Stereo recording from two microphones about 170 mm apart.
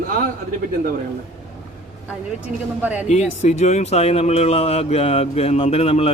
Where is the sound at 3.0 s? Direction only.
40° left (ahead or behind).